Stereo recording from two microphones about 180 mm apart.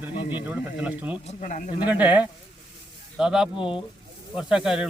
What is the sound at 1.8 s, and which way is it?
Speech, 10° right (ahead or behind).